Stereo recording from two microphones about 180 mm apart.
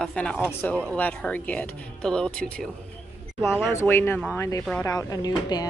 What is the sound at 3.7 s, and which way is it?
Speech, 15° left (ahead or behind).